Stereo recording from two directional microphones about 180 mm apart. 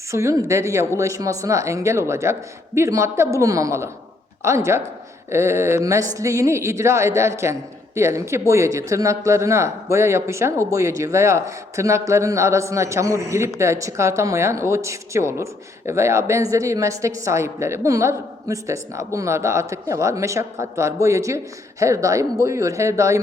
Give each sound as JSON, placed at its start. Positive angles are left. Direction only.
{"t": 0.1, "sound": "a woman's voice", "side_deg": -15}